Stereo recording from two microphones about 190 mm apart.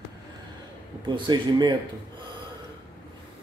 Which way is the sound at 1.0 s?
25° right (ahead or behind).